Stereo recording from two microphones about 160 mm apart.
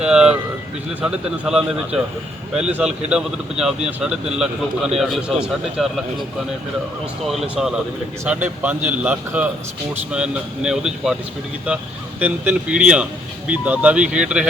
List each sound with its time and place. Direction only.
0.0 s speech: 5° right (ahead or behind)
7.3 s speech: 5° right (ahead or behind)
12.2 s speech: 10° right (ahead or behind)